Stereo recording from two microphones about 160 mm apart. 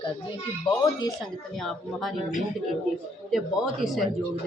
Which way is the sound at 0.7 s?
30° left (ahead or behind).